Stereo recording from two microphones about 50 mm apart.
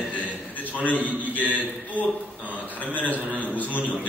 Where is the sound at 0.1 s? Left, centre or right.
Left.